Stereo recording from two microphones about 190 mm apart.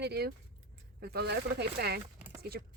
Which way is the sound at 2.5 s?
55° right (ahead or behind).